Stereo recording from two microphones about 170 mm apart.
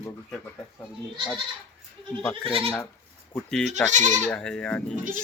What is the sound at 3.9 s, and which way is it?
Speech, 45° right (ahead or behind).